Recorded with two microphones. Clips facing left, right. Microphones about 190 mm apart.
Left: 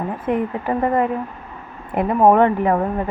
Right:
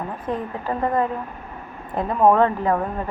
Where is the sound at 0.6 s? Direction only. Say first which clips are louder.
Even; 15° left (ahead or behind).